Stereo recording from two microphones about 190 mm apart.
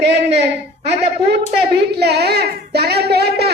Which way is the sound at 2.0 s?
60° right (ahead or behind).